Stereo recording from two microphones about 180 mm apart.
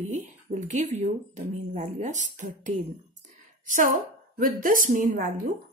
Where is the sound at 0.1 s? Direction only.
45° right (ahead or behind).